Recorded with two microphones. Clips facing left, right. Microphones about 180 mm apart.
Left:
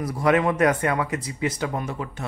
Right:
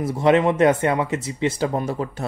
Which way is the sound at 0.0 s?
25° right (ahead or behind).